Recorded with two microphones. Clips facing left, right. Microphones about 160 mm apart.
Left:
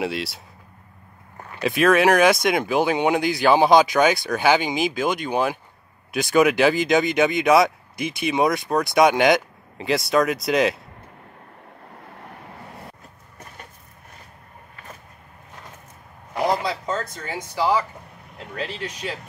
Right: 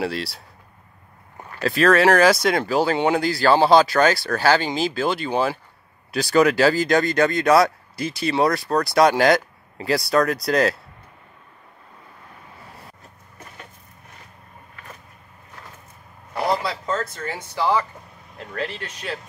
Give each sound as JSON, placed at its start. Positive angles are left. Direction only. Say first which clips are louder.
{"t": 0.0, "sound": "speech", "louder": "even", "side_deg": 0}
{"t": 1.6, "sound": "speech", "louder": "right 1 dB", "side_deg": 5}
{"t": 2.6, "sound": "speech", "louder": "even", "side_deg": 15}
{"t": 16.3, "sound": "a sound", "louder": "left 1 dB", "side_deg": 20}
{"t": 18.5, "sound": "speech", "louder": "right 1 dB", "side_deg": 10}